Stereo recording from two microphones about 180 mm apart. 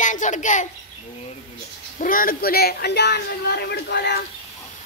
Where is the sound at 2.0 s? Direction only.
50° left (ahead or behind); by 4.2 s 70° left (ahead or behind).